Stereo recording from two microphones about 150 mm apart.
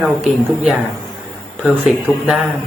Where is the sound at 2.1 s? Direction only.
20° left (ahead or behind).